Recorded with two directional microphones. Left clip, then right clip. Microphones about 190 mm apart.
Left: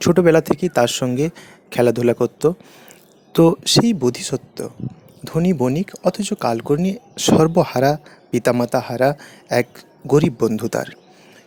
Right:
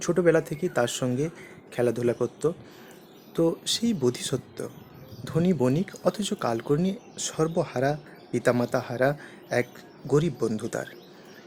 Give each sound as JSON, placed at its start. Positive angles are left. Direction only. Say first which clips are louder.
{"t": 0.0, "sound": "speech", "louder": "left 8 dB", "side_deg": 40}